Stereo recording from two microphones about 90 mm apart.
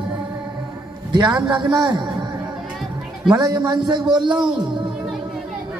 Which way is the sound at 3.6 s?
60° right (ahead or behind).